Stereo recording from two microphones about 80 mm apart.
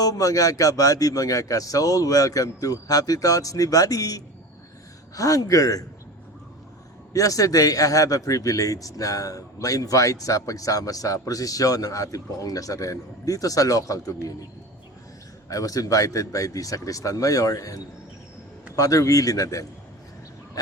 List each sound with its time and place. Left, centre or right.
0.0 s a man's voice: left
7.1 s a man's voice: left
15.4 s a man's voice: left